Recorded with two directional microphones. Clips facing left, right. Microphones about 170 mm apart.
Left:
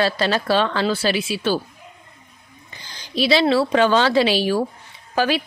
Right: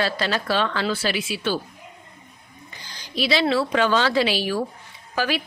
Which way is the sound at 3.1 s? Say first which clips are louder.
Left 4 dB; 30° left (ahead or behind).